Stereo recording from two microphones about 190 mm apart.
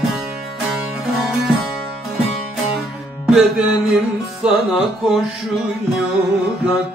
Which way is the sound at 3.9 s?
Centre (ahead or behind).